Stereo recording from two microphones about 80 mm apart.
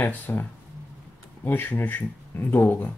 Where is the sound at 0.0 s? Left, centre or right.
Left.